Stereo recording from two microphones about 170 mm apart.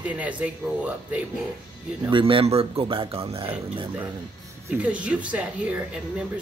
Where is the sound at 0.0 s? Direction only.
10° right (ahead or behind).